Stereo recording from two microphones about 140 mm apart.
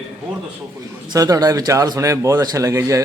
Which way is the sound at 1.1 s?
25° right (ahead or behind).